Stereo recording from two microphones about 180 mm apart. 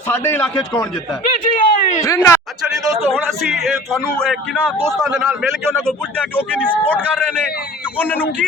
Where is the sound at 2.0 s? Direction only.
15° left (ahead or behind).